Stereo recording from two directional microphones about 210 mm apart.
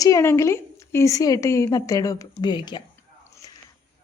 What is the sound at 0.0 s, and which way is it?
A woman's voice, 15° left (ahead or behind).